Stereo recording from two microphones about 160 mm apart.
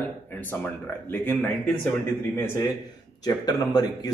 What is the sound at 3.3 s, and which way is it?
Speech, 25° left (ahead or behind).